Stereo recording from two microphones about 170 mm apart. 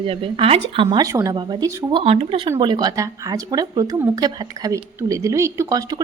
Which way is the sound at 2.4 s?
25° right (ahead or behind).